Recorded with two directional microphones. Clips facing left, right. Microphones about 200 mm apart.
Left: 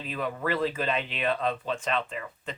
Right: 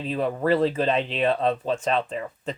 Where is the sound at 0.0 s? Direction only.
35° right (ahead or behind).